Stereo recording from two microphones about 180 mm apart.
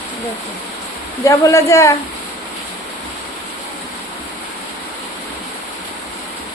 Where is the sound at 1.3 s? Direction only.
15° left (ahead or behind).